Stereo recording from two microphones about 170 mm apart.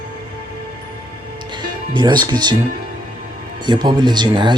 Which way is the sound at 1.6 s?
25° right (ahead or behind).